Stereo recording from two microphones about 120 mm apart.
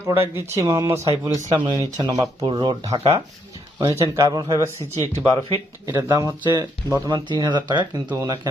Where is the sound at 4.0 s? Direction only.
30° right (ahead or behind).